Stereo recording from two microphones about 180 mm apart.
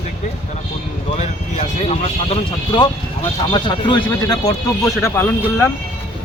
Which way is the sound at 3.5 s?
25° left (ahead or behind).